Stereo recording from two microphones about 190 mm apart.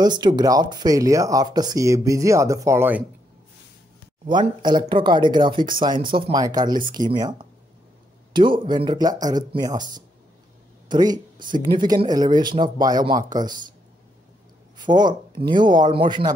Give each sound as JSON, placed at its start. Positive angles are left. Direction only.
{"t": 0.0, "sound": "speech", "side_deg": -20}
{"t": 4.3, "sound": "speech", "side_deg": -25}
{"t": 14.8, "sound": "speech", "side_deg": -20}